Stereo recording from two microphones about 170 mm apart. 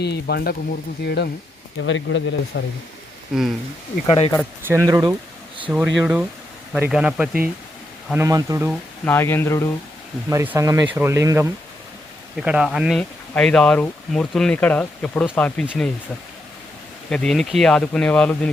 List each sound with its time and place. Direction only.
0.0 s speech: 75° left (ahead or behind)
1.8 s speech: 90° left
3.3 s speech: 5° right (ahead or behind)
4.0 s speech: 30° left (ahead or behind)
4.9 s speech: 20° right (ahead or behind)
5.6 s speech: 5° right (ahead or behind)
8.1 s speech: 15° right (ahead or behind)
9.0 s speech: 15° left (ahead or behind)
10.2 s speech: 10° right (ahead or behind)
12.4 s speech: 5° right (ahead or behind)
17.1 s speech: 5° left (ahead or behind)